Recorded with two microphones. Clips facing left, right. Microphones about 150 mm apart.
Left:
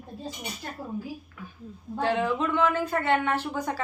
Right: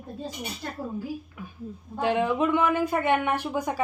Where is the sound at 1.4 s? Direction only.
15° right (ahead or behind).